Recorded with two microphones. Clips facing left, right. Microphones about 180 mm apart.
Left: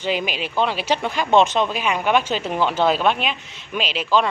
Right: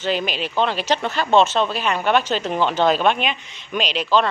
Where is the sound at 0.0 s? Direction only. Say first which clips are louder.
Right 1 dB; 10° left (ahead or behind).